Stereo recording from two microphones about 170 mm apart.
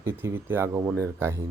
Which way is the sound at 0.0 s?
15° right (ahead or behind).